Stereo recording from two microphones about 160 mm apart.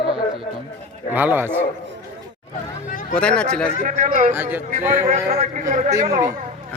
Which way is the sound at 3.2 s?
5° left (ahead or behind).